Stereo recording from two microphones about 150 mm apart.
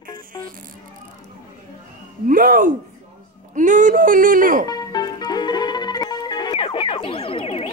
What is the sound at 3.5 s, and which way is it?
Speech, 60° right (ahead or behind).